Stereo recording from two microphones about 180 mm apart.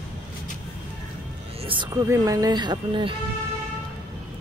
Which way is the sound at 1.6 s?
25° right (ahead or behind).